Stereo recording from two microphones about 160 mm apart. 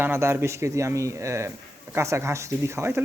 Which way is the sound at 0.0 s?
15° right (ahead or behind).